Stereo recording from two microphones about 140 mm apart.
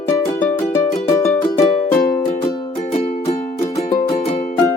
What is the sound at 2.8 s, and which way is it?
Music, 50° left (ahead or behind).